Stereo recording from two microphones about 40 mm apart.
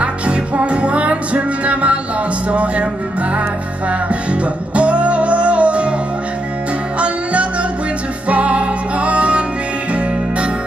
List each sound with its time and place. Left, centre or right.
0.0 s music: right
2.5 s speech: right
4.1 s music: right
8.3 s music: right